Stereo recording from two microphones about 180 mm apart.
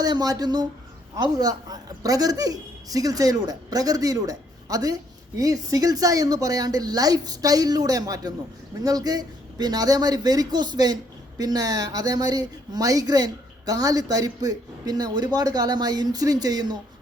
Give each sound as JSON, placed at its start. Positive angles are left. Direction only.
{"t": 0.0, "sound": "speech", "side_deg": -20}